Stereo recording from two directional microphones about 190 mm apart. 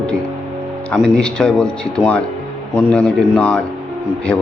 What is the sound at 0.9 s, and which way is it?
A man's voice, 5° left (ahead or behind).